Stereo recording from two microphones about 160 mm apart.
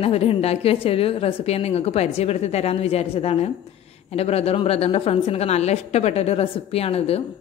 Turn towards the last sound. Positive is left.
turn(degrees=40)  # may be behind; listen again after turning